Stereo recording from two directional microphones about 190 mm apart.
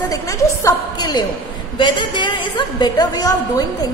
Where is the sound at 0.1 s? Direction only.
15° left (ahead or behind).